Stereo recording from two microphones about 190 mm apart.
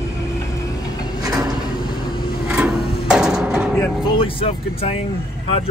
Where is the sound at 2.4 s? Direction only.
5° right (ahead or behind).